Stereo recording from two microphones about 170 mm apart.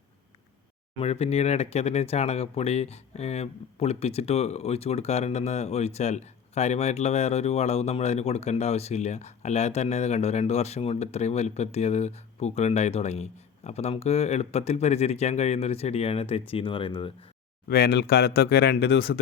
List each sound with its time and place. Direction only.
0.9 s speech: 35° left (ahead or behind)
17.7 s speech: 65° left (ahead or behind)